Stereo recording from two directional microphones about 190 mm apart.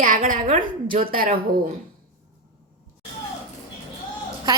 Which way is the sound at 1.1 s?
50° right (ahead or behind).